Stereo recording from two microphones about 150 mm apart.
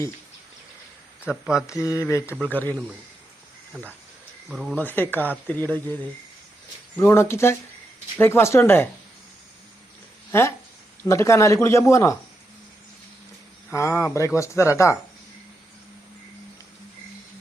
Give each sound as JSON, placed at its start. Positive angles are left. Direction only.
{"t": 1.2, "sound": "speech", "side_deg": -5}
{"t": 1.7, "sound": "speech", "side_deg": 20}
{"t": 3.7, "sound": "speech", "side_deg": -10}
{"t": 4.8, "sound": "speech", "side_deg": 10}
{"t": 11.0, "sound": "speech", "side_deg": 20}
{"t": 13.7, "sound": "speech", "side_deg": 20}